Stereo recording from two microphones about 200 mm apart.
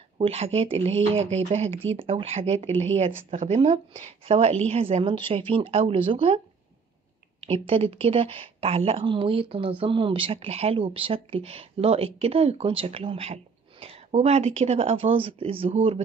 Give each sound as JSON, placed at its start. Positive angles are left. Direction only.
{"t": 0.2, "sound": "speech", "side_deg": -30}